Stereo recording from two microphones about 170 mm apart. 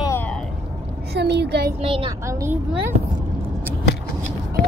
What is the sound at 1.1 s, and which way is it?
Speech, 80° right.